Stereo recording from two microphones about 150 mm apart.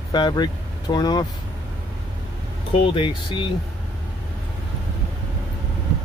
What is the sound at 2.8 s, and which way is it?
Speech, 35° left (ahead or behind).